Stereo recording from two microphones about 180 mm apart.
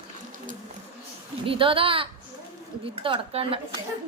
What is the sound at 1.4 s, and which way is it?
A woman's voice, 30° right (ahead or behind).